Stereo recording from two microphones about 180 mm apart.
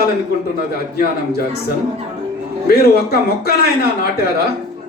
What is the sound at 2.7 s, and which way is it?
A man's voice, 60° left (ahead or behind).